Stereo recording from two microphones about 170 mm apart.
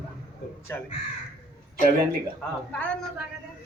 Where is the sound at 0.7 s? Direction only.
15° left (ahead or behind).